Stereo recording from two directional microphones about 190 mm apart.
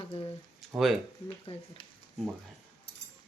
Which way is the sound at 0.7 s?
5° right (ahead or behind).